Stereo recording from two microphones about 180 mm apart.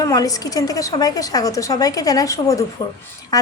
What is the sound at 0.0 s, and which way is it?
A woman's voice, 20° left (ahead or behind).